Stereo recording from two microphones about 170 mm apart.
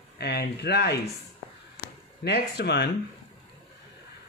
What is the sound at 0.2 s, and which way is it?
Speech, 75° left (ahead or behind).